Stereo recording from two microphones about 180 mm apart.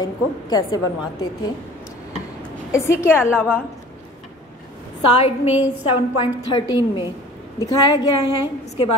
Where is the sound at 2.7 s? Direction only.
15° left (ahead or behind).